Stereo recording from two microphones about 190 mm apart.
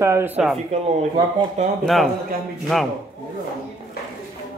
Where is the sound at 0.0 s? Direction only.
15° right (ahead or behind).